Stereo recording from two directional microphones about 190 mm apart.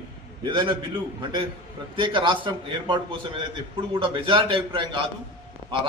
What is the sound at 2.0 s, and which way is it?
A man's voice, 25° right (ahead or behind).